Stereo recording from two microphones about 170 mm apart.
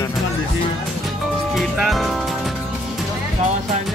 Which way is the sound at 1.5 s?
Centre (ahead or behind).